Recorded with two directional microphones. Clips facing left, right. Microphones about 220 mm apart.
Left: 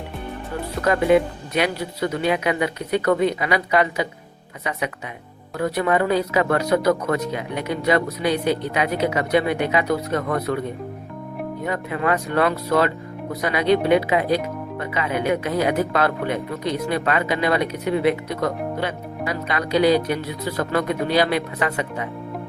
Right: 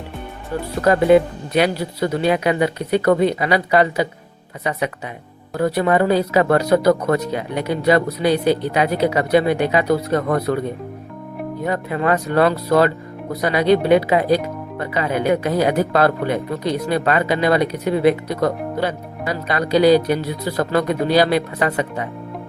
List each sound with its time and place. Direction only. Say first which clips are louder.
0.8 s speech: right 4 dB; 35° right (ahead or behind)
5.5 s speech: right 4 dB; 35° right (ahead or behind)
11.6 s speech: right 4 dB; 35° right (ahead or behind)